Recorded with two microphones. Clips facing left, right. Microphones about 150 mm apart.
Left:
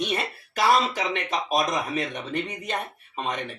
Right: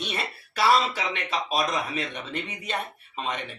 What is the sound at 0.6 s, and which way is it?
Speech, 15° left (ahead or behind).